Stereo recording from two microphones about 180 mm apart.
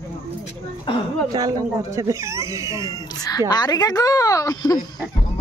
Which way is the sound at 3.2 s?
20° left (ahead or behind).